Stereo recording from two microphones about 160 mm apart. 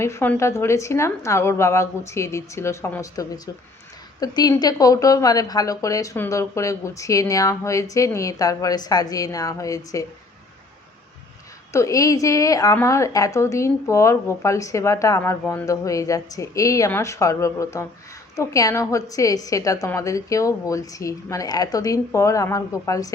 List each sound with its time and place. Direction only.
0.0 s a woman's voice: 15° left (ahead or behind)
11.7 s a woman's voice: 20° left (ahead or behind)